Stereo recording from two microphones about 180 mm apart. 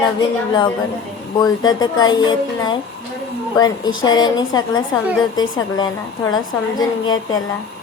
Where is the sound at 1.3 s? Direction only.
25° left (ahead or behind).